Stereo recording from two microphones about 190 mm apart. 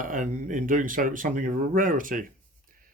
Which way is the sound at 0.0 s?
45° right (ahead or behind).